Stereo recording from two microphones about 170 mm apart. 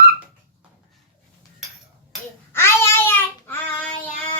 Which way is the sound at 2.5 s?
15° left (ahead or behind).